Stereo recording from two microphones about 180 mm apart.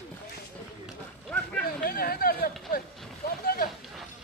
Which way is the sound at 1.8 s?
55° left (ahead or behind).